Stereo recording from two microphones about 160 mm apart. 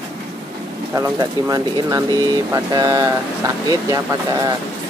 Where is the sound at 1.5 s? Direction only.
20° right (ahead or behind).